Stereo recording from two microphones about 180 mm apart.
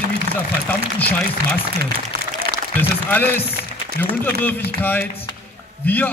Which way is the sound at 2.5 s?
55° right (ahead or behind).